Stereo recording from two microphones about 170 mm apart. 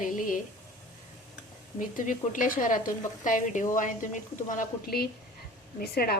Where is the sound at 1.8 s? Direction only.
50° left (ahead or behind).